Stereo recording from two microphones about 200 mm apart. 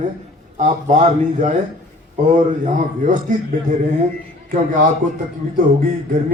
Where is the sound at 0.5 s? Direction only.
35° right (ahead or behind).